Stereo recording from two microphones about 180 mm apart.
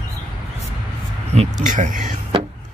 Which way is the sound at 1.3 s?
40° right (ahead or behind).